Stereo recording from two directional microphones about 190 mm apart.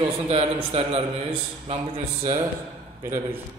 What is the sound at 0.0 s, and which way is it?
A man's voice, 30° right (ahead or behind).